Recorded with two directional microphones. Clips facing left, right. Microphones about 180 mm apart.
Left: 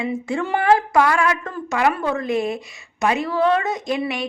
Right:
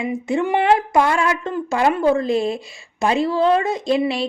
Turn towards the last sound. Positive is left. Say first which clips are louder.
# right 4 dB
turn(degrees=-30)  # may be behind; listen again after turning